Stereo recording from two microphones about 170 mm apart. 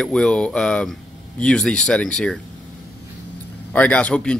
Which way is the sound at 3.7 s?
10° left (ahead or behind).